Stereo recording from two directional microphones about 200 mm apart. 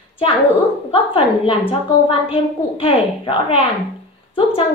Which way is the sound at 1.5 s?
25° left (ahead or behind).